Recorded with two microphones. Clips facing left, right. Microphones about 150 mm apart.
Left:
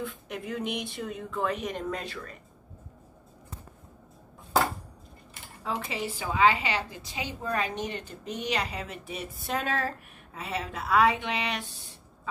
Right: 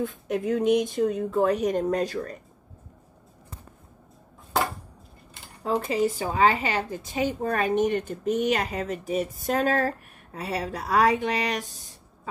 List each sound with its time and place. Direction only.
0.0 s speech: 40° right (ahead or behind)
5.6 s speech: 40° right (ahead or behind)